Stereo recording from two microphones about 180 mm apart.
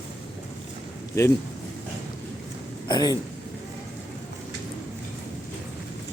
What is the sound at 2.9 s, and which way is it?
Speech, 20° left (ahead or behind).